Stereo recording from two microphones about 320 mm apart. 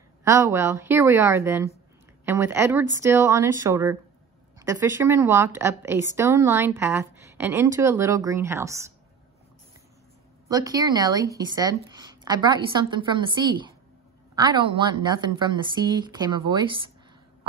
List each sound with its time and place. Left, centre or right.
0.2 s a woman's voice: centre
10.5 s a woman's voice: centre